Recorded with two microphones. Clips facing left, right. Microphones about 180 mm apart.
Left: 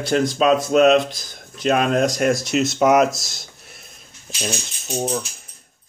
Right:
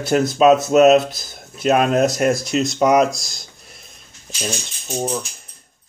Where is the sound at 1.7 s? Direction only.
45° right (ahead or behind).